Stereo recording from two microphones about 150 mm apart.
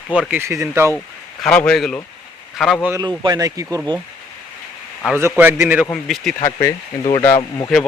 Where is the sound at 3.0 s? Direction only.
25° right (ahead or behind).